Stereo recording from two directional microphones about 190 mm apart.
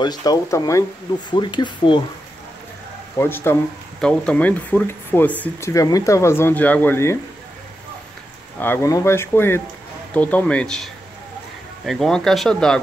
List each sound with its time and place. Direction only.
0.0 s speech: 20° left (ahead or behind)
3.2 s speech: 10° left (ahead or behind)
8.5 s speech: 10° left (ahead or behind)